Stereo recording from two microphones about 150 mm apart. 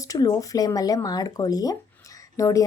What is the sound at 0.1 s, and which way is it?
Speech, 25° left (ahead or behind).